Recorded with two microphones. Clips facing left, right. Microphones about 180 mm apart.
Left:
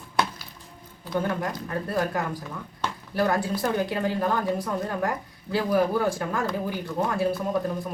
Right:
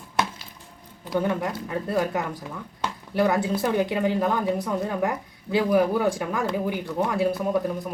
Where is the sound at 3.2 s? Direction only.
15° right (ahead or behind).